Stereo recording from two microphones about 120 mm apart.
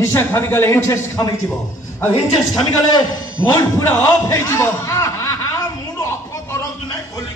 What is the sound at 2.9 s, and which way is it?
A man's voice, 25° left (ahead or behind).